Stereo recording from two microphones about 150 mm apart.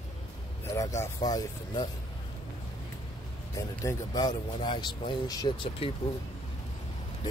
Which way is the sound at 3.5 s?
20° left (ahead or behind).